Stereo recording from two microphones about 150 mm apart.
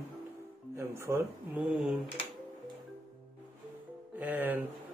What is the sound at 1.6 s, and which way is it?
Speech, 5° right (ahead or behind).